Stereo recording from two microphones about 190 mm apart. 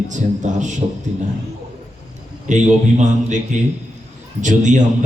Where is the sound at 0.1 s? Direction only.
40° right (ahead or behind).